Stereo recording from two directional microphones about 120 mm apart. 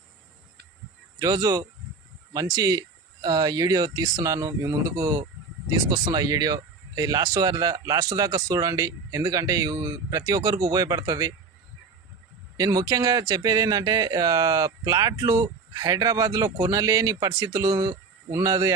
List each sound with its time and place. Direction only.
1.2 s speech: 30° right (ahead or behind)
12.5 s speech: 30° right (ahead or behind)